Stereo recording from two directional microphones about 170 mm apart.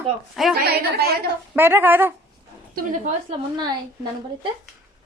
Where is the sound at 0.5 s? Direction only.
65° right (ahead or behind).